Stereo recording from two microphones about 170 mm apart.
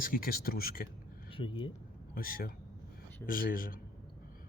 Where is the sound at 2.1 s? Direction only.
60° left (ahead or behind).